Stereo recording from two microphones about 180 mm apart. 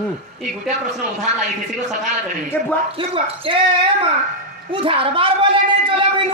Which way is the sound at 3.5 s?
30° right (ahead or behind).